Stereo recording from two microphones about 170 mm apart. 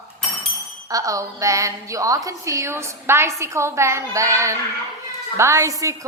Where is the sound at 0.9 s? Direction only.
20° right (ahead or behind).